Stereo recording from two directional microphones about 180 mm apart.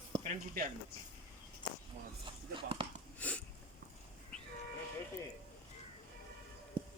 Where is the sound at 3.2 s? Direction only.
10° left (ahead or behind).